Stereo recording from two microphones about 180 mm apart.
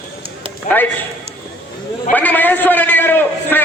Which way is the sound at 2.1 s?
10° left (ahead or behind).